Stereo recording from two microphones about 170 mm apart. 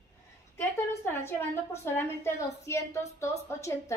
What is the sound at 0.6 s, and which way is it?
A woman's voice, 15° left (ahead or behind).